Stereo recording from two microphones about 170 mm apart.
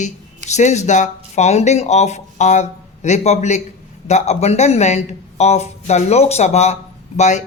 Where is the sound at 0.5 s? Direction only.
40° left (ahead or behind).